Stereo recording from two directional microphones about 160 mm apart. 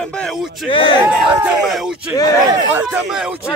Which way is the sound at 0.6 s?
30° left (ahead or behind).